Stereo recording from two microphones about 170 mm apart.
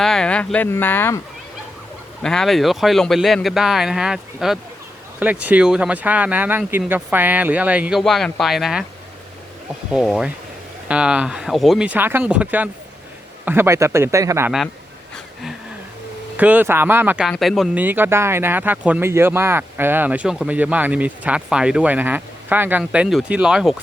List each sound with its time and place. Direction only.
0.0 s speech: 5° left (ahead or behind)
2.2 s speech: 5° left (ahead or behind)
9.9 s speech: 5° right (ahead or behind)
16.4 s speech: 10° right (ahead or behind)
17.8 s speech: 10° right (ahead or behind)